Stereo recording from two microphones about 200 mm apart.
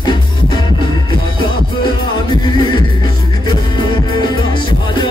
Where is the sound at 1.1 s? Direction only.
25° left (ahead or behind).